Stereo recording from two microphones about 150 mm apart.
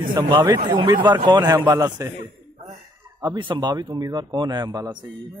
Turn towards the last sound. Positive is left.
turn(degrees=-30)  # may be behind; listen again after turning